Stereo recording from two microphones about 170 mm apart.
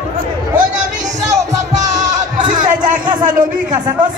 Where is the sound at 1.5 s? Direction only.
45° right (ahead or behind).